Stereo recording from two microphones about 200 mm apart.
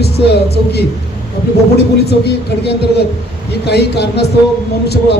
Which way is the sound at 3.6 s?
55° left (ahead or behind).